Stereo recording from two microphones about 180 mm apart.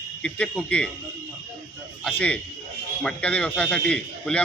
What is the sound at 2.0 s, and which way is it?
A man's voice, 5° left (ahead or behind).